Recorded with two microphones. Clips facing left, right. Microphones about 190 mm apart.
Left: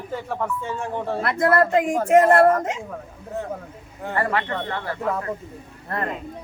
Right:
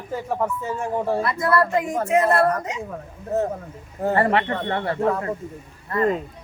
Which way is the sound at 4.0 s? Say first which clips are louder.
Right 5 dB; 35° right (ahead or behind).